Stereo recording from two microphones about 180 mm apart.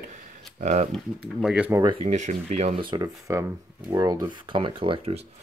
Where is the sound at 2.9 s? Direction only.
20° right (ahead or behind).